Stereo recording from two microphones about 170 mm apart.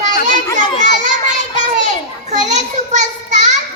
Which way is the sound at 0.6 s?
45° right (ahead or behind).